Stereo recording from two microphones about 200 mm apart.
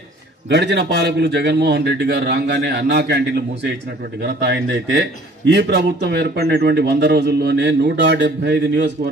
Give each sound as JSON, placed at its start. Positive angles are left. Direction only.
{"t": 0.5, "sound": "a man's voice", "side_deg": -60}